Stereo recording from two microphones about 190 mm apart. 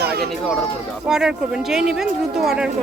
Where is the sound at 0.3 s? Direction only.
Centre (ahead or behind).